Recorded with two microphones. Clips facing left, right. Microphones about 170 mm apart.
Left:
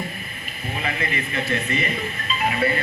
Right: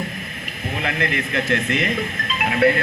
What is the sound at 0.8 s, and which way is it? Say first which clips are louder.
Speech: right 3 dB; 80° right.